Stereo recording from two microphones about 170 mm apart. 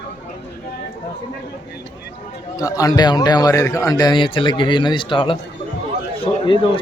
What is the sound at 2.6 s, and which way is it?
A man's voice, 20° left (ahead or behind).